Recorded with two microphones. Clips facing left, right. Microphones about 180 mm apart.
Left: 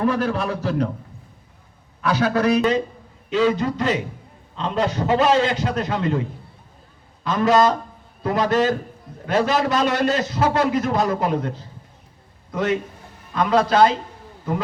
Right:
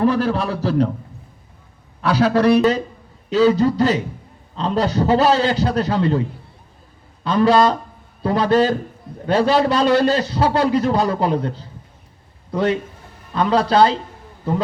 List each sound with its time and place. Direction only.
0.0 s a man's voice: 35° right (ahead or behind)
2.0 s a man's voice: 35° right (ahead or behind)
7.3 s a man's voice: 30° right (ahead or behind)